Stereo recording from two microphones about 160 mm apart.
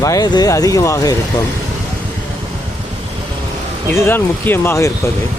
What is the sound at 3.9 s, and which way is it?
Speech, 15° left (ahead or behind).